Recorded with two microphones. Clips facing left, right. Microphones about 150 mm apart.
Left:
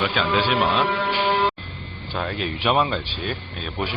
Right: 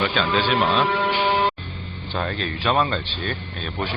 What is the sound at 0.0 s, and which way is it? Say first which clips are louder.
Speech: even; 10° left (ahead or behind).